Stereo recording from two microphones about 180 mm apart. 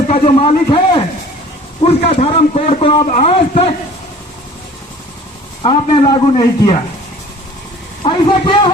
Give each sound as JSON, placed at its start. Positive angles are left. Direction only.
{"t": 0.1, "sound": "a man's voice", "side_deg": 35}
{"t": 3.1, "sound": "a man's voice", "side_deg": 40}
{"t": 5.6, "sound": "a man's voice", "side_deg": 25}
{"t": 8.0, "sound": "a man's voice", "side_deg": 30}